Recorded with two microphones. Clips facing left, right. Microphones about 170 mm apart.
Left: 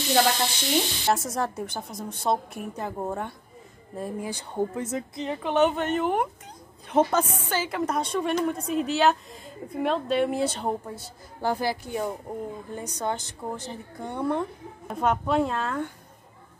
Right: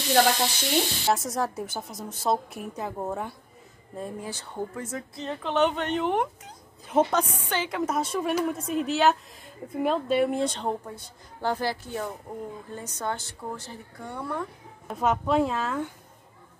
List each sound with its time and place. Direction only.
0.1 s a woman's voice: centre (ahead or behind)
3.9 s a woman's voice: 10° left (ahead or behind)
14.9 s a woman's voice: centre (ahead or behind)